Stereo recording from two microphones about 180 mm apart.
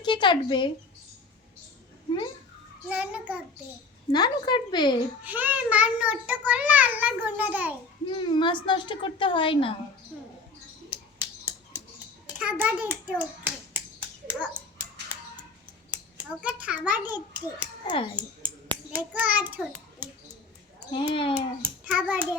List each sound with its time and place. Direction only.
0.0 s speech: 25° left (ahead or behind)
2.9 s a child's voice: 5° right (ahead or behind)
4.1 s a woman's voice: 25° left (ahead or behind)
5.2 s a child's voice: 10° right (ahead or behind)
8.1 s a woman's voice: 25° left (ahead or behind)
10.8 s finger snapping: 10° right (ahead or behind)
12.4 s a child's voice: 10° right (ahead or behind)
15.1 s a sound: 10° right (ahead or behind)
15.9 s a child's voice: 10° right (ahead or behind)
17.8 s a woman's voice: 30° left (ahead or behind)
18.9 s a child's voice: 10° right (ahead or behind)
21.1 s a woman's voice: 30° left (ahead or behind)
21.6 s a child's voice: 10° right (ahead or behind)